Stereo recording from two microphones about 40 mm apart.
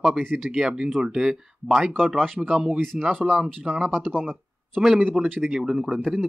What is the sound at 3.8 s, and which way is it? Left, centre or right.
Speech, centre.